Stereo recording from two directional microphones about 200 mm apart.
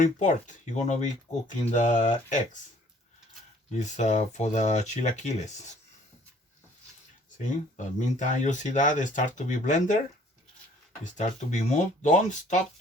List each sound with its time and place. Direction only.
0.0 s speech: 40° left (ahead or behind)
3.8 s speech: 35° left (ahead or behind)
7.8 s speech: 40° left (ahead or behind)
11.0 s speech: 35° left (ahead or behind)